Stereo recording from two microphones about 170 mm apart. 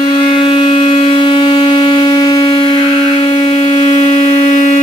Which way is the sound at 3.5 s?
45° left (ahead or behind).